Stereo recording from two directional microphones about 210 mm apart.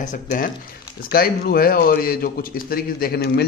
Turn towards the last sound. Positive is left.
turn(degrees=50)  # may be behind; listen again after turning